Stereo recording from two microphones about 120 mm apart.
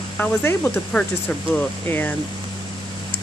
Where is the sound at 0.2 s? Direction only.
20° left (ahead or behind).